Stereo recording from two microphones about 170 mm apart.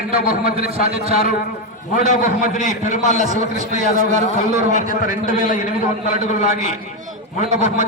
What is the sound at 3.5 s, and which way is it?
A man's voice, 45° right (ahead or behind).